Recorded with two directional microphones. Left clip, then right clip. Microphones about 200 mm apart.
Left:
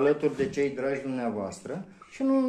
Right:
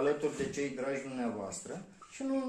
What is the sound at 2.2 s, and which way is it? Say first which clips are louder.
Speech: left 10 dB; 50° left (ahead or behind).